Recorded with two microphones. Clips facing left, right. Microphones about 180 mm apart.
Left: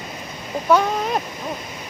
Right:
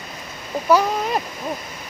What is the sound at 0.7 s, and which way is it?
Speech, centre (ahead or behind).